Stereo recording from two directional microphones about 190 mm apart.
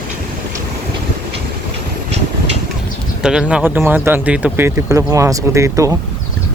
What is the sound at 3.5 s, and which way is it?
Speech, 10° right (ahead or behind).